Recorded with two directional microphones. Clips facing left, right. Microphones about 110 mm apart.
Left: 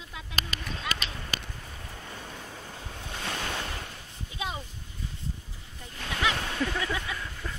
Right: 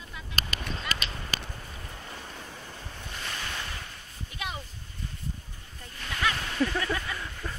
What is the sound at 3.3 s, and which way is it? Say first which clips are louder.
Waves: left 4 dB; 50° left (ahead or behind).